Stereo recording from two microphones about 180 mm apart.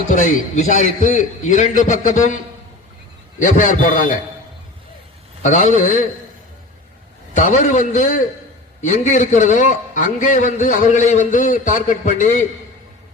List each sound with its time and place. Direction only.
0.1 s a man's voice: 45° left (ahead or behind)
5.4 s a man's voice: 40° left (ahead or behind)
7.3 s a man's voice: 45° left (ahead or behind)